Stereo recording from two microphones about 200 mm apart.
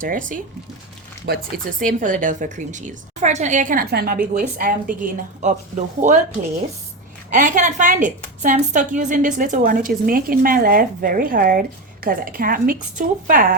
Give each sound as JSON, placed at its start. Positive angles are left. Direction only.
{"t": 0.0, "sound": "a woman's voice", "side_deg": -40}
{"t": 7.3, "sound": "a woman's voice", "side_deg": -40}